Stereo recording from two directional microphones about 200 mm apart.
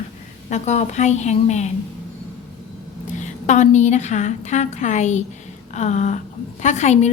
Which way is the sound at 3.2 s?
35° left (ahead or behind).